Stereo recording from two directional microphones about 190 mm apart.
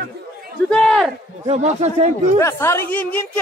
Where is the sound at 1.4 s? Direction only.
35° right (ahead or behind).